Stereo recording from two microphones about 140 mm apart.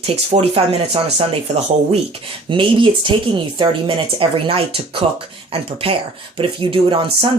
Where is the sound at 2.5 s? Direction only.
35° right (ahead or behind).